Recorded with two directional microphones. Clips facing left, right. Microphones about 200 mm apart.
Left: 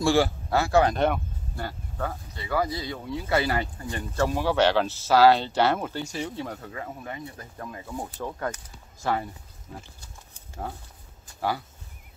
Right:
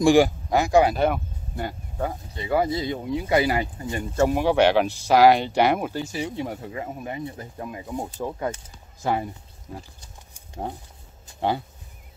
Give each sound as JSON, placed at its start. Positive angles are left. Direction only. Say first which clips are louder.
{"t": 0.0, "sound": "speech", "louder": "right 5 dB", "side_deg": -15}
{"t": 1.6, "sound": "speech", "louder": "right 4 dB", "side_deg": -15}
{"t": 10.3, "sound": "a sound", "louder": "right 4 dB", "side_deg": -20}